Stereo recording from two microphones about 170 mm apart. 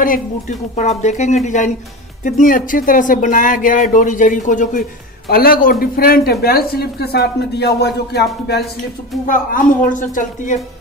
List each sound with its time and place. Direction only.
0.0 s speech: 50° left (ahead or behind)
5.3 s speech: 60° left (ahead or behind)
9.3 s speech: 50° left (ahead or behind)